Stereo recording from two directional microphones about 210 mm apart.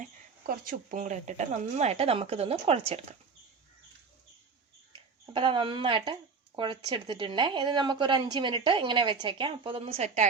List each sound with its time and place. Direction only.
0.0 s speech: 40° right (ahead or behind)
4.9 s speech: 25° right (ahead or behind)